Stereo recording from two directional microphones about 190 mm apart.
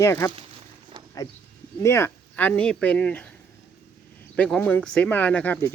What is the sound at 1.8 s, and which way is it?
Speech, 15° left (ahead or behind).